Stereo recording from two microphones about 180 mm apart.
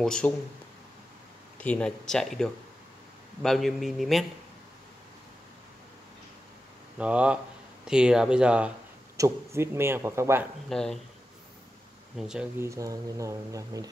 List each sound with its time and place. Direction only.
0.0 s speech: 5° left (ahead or behind)
1.6 s speech: 5° left (ahead or behind)
7.0 s speech: 5° right (ahead or behind)
9.1 s speech: 15° right (ahead or behind)
10.7 s speech: centre (ahead or behind)
12.2 s speech: 5° right (ahead or behind)
12.6 s speech: 15° right (ahead or behind)